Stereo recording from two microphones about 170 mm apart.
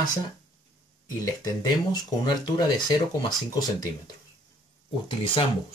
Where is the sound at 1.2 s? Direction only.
20° left (ahead or behind).